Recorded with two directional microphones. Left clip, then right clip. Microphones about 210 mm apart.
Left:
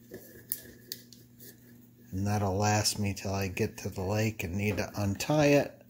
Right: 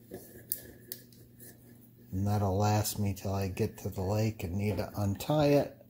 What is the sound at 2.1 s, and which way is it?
Speech, 5° left (ahead or behind).